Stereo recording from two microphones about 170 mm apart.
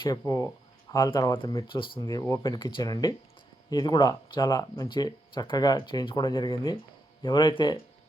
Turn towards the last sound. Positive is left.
turn(degrees=25)  # may be behind; listen again after turning